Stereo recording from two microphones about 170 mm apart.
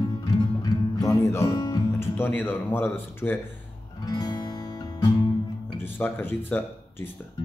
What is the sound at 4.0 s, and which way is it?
Guitar, 25° left (ahead or behind).